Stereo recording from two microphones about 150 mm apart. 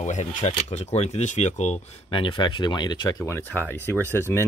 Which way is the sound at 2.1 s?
35° left (ahead or behind).